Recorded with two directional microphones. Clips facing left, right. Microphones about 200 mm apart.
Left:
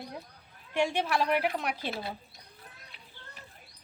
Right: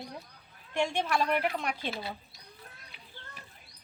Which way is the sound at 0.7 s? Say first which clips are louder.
Left 1 dB; 10° left (ahead or behind).